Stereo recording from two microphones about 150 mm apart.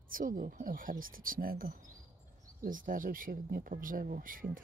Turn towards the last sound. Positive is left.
turn(degrees=-65)  # may be behind; listen again after turning